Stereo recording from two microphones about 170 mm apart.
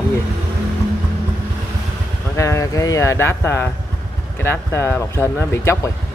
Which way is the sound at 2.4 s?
15° left (ahead or behind).